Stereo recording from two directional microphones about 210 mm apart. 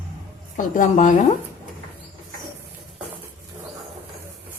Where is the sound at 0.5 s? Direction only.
35° left (ahead or behind).